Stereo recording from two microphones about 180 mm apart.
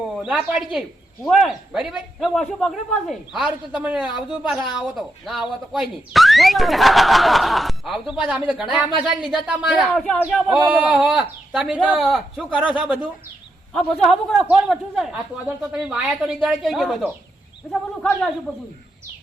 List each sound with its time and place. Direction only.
0.0 s speech: 5° right (ahead or behind)
4.0 s speech: 25° left (ahead or behind)
4.4 s speech: centre (ahead or behind)